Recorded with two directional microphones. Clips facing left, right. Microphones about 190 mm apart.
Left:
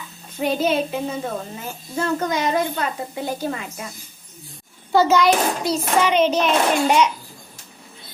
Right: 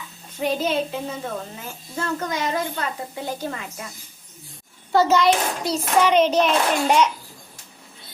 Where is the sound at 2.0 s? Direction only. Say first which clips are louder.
Left 4 dB; 20° left (ahead or behind).